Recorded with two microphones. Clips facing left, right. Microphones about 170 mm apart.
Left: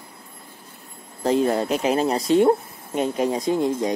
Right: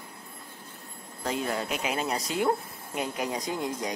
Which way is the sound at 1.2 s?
35° left (ahead or behind).